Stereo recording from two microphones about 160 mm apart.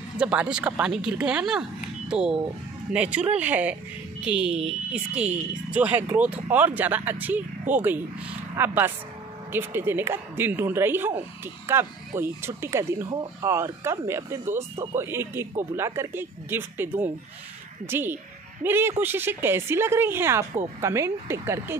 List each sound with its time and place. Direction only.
0.2 s speech: 5° right (ahead or behind)